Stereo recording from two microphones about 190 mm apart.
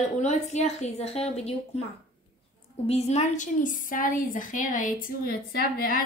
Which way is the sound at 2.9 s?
35° left (ahead or behind).